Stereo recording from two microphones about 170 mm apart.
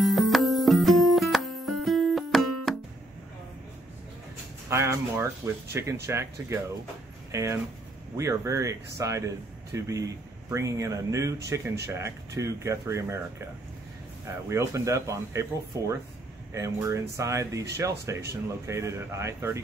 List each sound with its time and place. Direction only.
0.0 s music: centre (ahead or behind)
4.6 s a man's voice: 15° right (ahead or behind)
14.2 s a man's voice: 15° right (ahead or behind)
16.5 s a man's voice: 15° right (ahead or behind)